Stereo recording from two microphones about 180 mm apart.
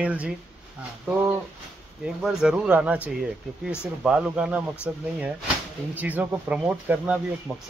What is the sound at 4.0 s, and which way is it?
Speech, 5° right (ahead or behind).